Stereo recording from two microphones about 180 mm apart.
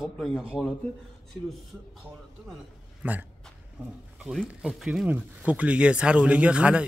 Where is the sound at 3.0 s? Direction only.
10° right (ahead or behind).